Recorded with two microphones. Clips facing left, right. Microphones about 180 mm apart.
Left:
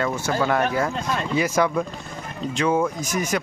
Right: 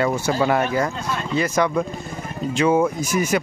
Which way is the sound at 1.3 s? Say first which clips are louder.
Right 1 dB; 10° left (ahead or behind).